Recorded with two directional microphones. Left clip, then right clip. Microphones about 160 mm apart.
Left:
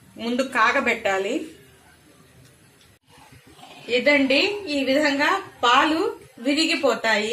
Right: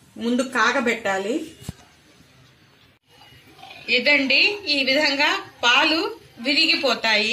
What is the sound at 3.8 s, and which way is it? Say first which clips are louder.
A woman's voice: right 1 dB; 70° left (ahead or behind).